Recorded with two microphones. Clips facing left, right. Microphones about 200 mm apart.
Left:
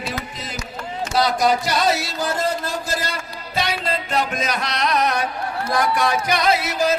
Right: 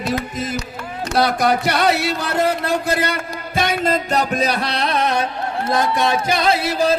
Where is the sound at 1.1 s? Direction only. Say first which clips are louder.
Right 2 dB; 60° right (ahead or behind).